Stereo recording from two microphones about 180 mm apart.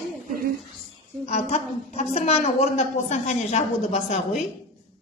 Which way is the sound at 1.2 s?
35° left (ahead or behind).